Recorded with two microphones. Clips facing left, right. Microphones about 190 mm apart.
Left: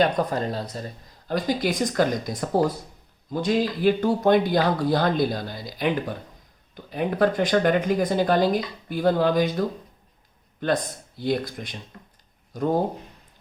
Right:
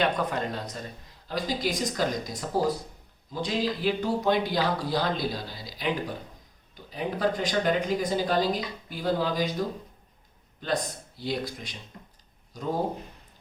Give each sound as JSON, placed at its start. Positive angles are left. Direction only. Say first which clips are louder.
{"t": 0.0, "sound": "speech", "louder": "left 5 dB", "side_deg": 35}
{"t": 1.3, "sound": "speech", "louder": "left 5 dB", "side_deg": 55}
{"t": 6.9, "sound": "speech", "louder": "left 6 dB", "side_deg": 60}
{"t": 10.6, "sound": "speech", "louder": "left 5 dB", "side_deg": 55}